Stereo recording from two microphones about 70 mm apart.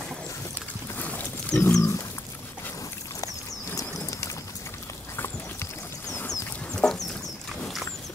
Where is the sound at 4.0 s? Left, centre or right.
Left.